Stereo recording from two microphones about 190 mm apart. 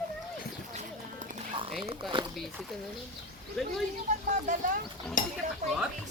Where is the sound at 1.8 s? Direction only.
25° right (ahead or behind).